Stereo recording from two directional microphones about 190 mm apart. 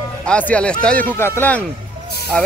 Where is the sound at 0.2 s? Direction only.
5° left (ahead or behind).